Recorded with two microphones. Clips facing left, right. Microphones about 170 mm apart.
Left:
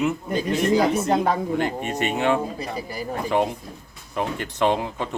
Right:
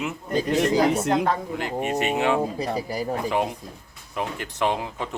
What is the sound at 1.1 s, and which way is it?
Speech, 10° left (ahead or behind).